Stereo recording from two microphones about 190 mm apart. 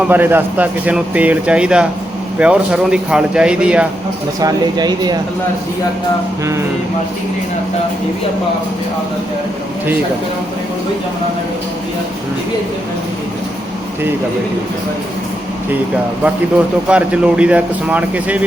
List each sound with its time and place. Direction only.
0.1 s speech: 10° right (ahead or behind)
4.4 s speech: 20° right (ahead or behind)
16.9 s speech: 5° right (ahead or behind)